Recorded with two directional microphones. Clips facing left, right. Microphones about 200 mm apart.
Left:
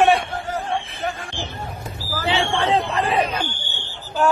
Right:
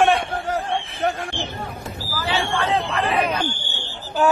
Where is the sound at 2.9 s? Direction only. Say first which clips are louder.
Left 1 dB; 30° left (ahead or behind).